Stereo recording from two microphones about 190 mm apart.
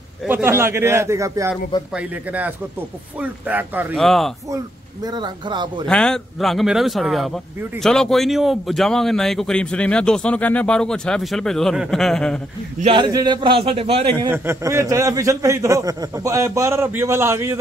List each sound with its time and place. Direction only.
0.3 s a man's voice: 10° right (ahead or behind)
5.0 s a man's voice: 20° right (ahead or behind)
5.9 s speech: 5° left (ahead or behind)
12.8 s a man's voice: 25° right (ahead or behind)
14.3 s a man's voice: 10° right (ahead or behind)